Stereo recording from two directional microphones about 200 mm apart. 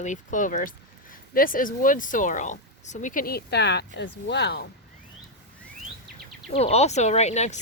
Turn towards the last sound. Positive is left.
turn(degrees=35)  # may be behind; listen again after turning